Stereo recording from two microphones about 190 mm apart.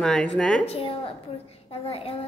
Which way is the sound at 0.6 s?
30° left (ahead or behind).